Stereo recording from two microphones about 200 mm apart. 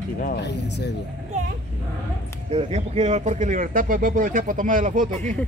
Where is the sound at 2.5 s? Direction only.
30° right (ahead or behind).